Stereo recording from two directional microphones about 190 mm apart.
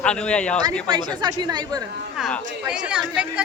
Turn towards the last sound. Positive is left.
turn(degrees=-5)  # may be behind; listen again after turning